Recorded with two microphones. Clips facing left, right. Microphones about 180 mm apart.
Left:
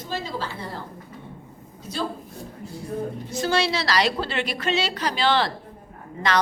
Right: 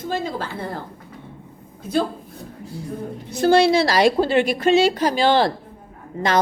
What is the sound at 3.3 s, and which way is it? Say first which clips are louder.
A woman's voice: right 9 dB; 55° right (ahead or behind).